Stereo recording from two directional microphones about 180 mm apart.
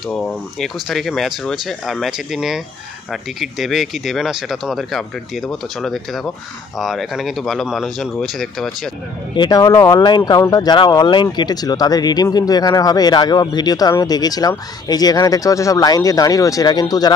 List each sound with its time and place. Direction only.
0.1 s speech: 5° left (ahead or behind)
9.3 s speech: 25° left (ahead or behind)